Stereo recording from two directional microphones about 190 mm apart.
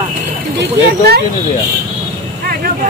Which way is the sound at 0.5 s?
60° right (ahead or behind).